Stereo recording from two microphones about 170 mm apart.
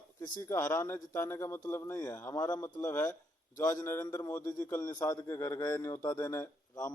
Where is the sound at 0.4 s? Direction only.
15° left (ahead or behind).